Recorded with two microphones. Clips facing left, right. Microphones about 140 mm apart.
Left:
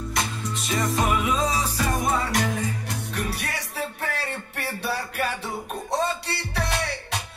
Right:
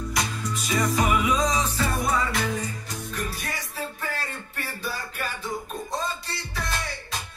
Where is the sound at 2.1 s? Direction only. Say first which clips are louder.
Left 1 dB; 65° left (ahead or behind).